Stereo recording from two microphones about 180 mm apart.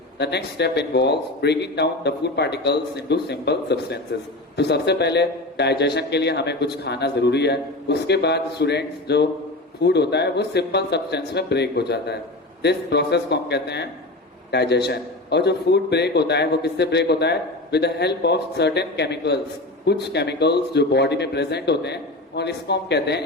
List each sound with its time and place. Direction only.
0.2 s a man's voice: 70° left (ahead or behind)